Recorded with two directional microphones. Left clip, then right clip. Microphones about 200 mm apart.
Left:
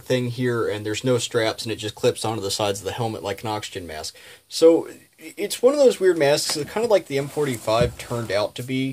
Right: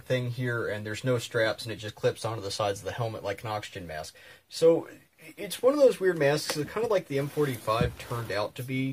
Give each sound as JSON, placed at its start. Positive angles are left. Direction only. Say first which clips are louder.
{"t": 0.1, "sound": "speech", "louder": "left 7 dB", "side_deg": 55}
{"t": 5.4, "sound": "speech", "louder": "left 5 dB", "side_deg": 60}